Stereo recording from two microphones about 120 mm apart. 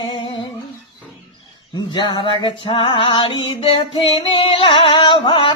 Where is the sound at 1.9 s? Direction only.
40° left (ahead or behind).